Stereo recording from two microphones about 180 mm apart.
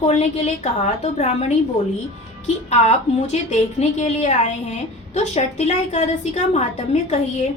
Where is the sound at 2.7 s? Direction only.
35° left (ahead or behind).